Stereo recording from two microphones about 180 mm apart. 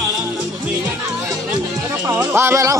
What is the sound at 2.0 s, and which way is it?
Speech, 15° right (ahead or behind).